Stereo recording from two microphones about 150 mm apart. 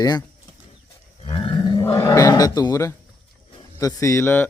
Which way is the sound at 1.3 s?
35° left (ahead or behind).